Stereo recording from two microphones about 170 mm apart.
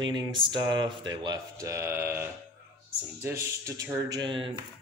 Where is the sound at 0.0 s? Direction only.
25° right (ahead or behind).